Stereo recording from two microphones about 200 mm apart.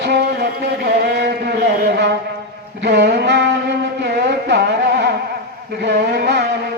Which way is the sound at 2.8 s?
55° right (ahead or behind).